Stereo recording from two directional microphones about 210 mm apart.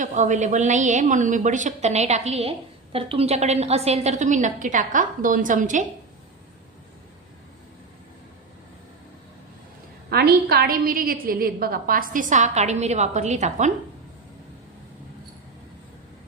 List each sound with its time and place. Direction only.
0.0 s a woman's voice: 35° right (ahead or behind)
10.1 s a woman's voice: 50° right (ahead or behind); by 13.7 s 35° right (ahead or behind)